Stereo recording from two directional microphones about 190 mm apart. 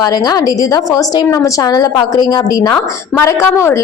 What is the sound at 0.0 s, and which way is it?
A woman's voice, 20° left (ahead or behind).